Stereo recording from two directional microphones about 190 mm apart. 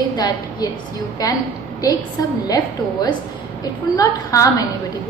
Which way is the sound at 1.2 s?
20° left (ahead or behind).